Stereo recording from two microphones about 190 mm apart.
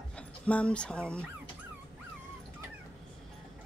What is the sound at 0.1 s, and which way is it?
Speech, 5° left (ahead or behind).